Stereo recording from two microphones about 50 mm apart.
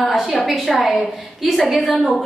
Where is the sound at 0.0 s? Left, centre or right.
Centre.